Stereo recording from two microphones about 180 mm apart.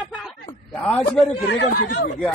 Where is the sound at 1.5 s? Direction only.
60° left (ahead or behind).